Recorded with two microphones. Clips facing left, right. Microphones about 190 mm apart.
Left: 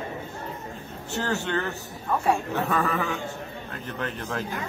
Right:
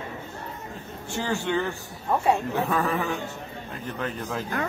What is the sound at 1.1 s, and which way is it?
Speech, 10° right (ahead or behind).